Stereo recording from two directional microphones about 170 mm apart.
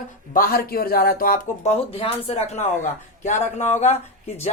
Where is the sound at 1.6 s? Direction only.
35° left (ahead or behind).